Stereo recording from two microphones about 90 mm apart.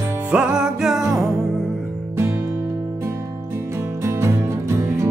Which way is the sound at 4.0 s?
30° right (ahead or behind).